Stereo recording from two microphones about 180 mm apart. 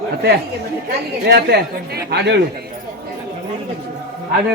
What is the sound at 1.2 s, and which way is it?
Speech, 65° right (ahead or behind).